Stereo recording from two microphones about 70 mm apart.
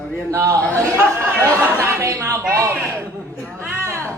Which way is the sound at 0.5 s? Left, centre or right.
Left.